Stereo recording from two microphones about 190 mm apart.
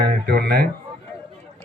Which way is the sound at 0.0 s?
55° right (ahead or behind).